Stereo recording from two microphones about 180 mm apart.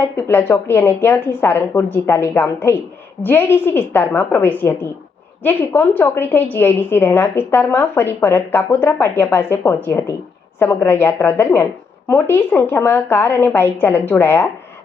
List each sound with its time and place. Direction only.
0.0 s a woman's voice: 15° left (ahead or behind)